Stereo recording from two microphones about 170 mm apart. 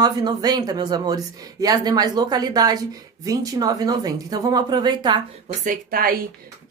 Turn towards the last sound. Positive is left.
turn(degrees=-60)  # may be behind; listen again after turning